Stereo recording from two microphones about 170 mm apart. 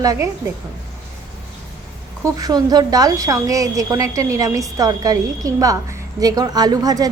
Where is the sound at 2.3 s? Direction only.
20° right (ahead or behind).